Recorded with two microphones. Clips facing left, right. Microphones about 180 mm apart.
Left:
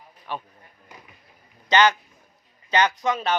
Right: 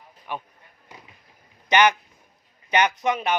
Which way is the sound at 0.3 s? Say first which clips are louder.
Even; 15° right (ahead or behind).